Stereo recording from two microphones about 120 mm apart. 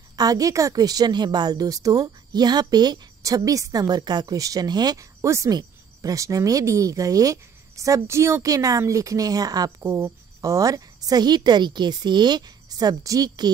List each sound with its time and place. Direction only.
0.1 s a woman's voice: 30° right (ahead or behind)